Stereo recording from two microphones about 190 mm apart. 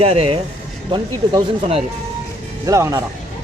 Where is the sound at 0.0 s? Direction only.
30° right (ahead or behind).